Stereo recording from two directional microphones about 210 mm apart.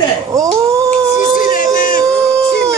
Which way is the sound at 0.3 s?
15° right (ahead or behind).